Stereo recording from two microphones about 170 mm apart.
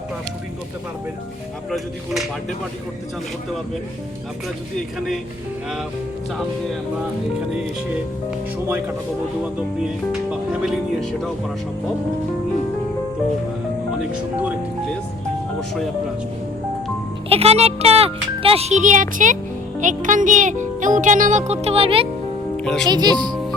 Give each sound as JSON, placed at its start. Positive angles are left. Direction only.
{"t": 1.7, "sound": "speech", "side_deg": 0}
{"t": 4.9, "sound": "speech", "side_deg": 0}
{"t": 9.4, "sound": "speech", "side_deg": -5}
{"t": 17.2, "sound": "a child's voice", "side_deg": -35}
{"t": 19.8, "sound": "music", "side_deg": -50}
{"t": 22.5, "sound": "speech", "side_deg": 5}
{"t": 22.9, "sound": "speech", "side_deg": -25}